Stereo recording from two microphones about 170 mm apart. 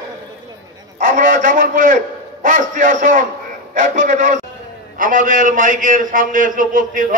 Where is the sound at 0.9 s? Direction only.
50° right (ahead or behind).